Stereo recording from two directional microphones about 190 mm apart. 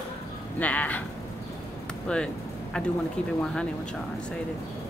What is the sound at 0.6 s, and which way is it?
Speech, 10° left (ahead or behind).